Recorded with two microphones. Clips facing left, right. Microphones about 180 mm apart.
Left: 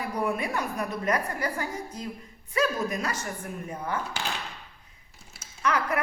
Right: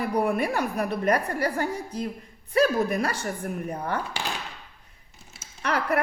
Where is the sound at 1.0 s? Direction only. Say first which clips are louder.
Right 4 dB; 35° right (ahead or behind).